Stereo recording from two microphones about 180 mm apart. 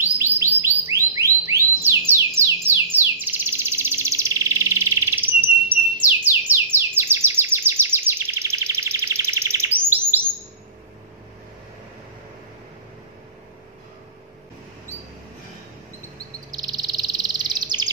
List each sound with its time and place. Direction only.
0.6 s a sound: 15° right (ahead or behind)
1.9 s bird: 15° right (ahead or behind)
16.5 s bird: 20° right (ahead or behind)